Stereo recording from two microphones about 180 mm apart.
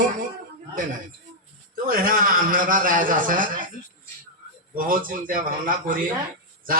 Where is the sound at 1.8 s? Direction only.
50° right (ahead or behind).